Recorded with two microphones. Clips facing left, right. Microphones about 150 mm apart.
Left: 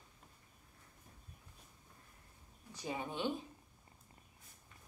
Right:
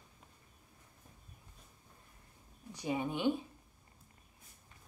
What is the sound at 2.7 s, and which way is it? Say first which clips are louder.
Speech: right 5 dB; 15° right (ahead or behind).